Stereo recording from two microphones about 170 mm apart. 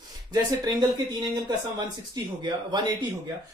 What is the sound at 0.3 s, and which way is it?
Speech, 25° right (ahead or behind).